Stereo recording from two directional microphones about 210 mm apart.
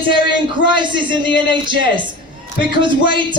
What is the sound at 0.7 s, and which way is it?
A man's voice, 20° right (ahead or behind).